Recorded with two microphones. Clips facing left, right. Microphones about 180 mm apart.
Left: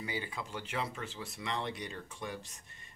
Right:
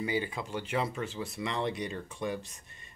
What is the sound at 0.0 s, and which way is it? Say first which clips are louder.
Speech: right 7 dB; 20° right (ahead or behind).